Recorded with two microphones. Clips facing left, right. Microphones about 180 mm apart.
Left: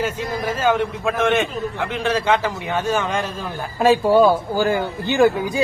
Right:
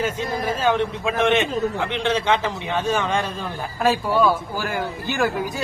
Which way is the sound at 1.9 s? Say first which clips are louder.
Left 6 dB; 5° left (ahead or behind).